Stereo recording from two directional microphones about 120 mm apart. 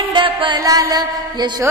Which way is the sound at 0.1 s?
40° right (ahead or behind).